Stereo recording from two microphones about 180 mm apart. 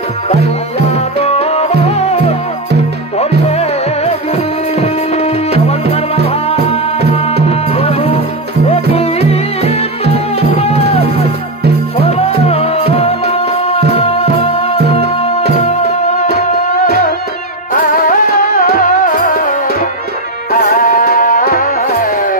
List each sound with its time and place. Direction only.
0.7 s music: 35° left (ahead or behind)
3.2 s music: 35° left (ahead or behind)
9.3 s music: 35° left (ahead or behind)
17.7 s music: 50° left (ahead or behind)
20.5 s music: 50° left (ahead or behind)